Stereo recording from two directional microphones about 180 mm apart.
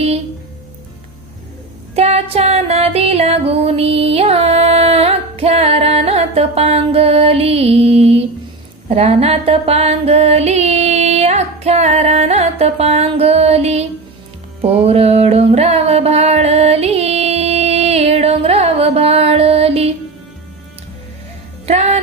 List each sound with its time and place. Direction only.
2.0 s music: 35° right (ahead or behind)
21.7 s music: 35° right (ahead or behind)